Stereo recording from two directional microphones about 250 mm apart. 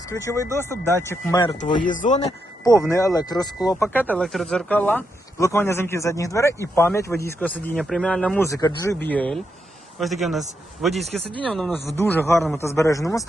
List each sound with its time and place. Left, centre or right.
0.1 s speech: centre
1.8 s speech: left
2.9 s a man's voice: centre